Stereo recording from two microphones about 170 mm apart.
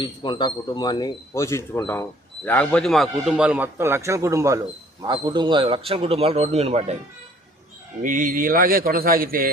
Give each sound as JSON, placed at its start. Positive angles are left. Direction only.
{"t": 0.0, "sound": "speech", "side_deg": 25}
{"t": 8.0, "sound": "speech", "side_deg": -50}